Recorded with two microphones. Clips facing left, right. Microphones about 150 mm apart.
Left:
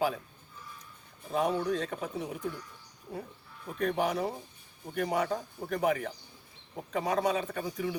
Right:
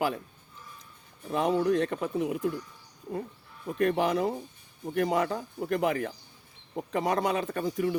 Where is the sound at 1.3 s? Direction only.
70° right (ahead or behind).